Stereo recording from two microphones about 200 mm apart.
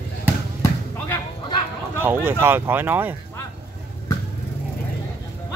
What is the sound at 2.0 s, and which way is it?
Speech, 10° right (ahead or behind).